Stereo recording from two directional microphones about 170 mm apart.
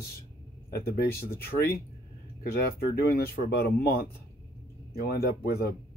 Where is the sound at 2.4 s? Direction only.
65° left (ahead or behind).